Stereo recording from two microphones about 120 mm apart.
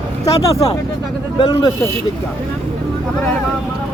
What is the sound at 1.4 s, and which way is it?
Speech, 45° left (ahead or behind).